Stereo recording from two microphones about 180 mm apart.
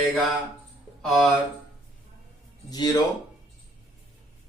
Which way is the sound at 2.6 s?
20° left (ahead or behind).